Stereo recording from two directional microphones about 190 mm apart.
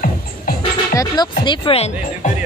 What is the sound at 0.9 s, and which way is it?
Speech, 20° left (ahead or behind).